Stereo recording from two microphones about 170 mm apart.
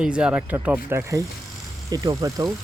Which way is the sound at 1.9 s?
20° right (ahead or behind).